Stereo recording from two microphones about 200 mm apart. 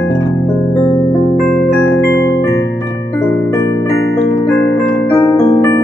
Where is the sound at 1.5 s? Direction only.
5° left (ahead or behind).